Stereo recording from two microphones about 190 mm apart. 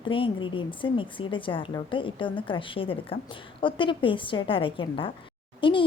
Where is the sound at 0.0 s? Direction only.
25° left (ahead or behind).